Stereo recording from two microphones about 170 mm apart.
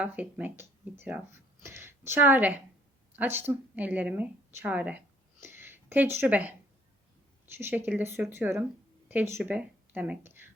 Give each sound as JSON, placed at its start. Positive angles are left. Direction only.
{"t": 0.0, "sound": "a woman's voice", "side_deg": -10}